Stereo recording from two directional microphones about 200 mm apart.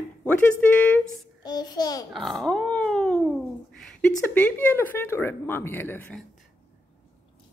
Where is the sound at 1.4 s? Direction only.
20° left (ahead or behind).